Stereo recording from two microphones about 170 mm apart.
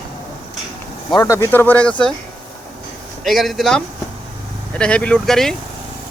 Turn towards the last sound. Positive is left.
turn(degrees=0)  # may be behind; listen again after turning